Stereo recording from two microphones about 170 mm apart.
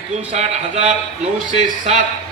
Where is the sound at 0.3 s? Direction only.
40° right (ahead or behind).